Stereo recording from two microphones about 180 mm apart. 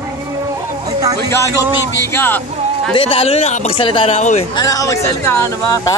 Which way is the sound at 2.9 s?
30° left (ahead or behind).